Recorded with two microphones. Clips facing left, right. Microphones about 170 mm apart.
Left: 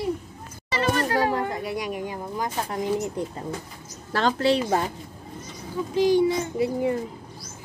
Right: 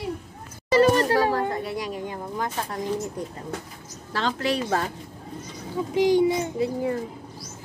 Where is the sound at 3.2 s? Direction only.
25° left (ahead or behind).